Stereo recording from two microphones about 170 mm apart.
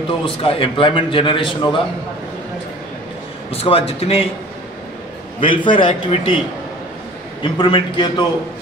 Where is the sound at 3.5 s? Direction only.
35° left (ahead or behind).